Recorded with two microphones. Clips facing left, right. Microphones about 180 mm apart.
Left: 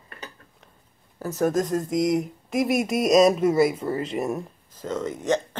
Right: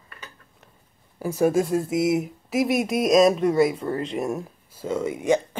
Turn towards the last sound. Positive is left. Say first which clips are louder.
# right 3 dB
turn(degrees=-10)  # may be behind; listen again after turning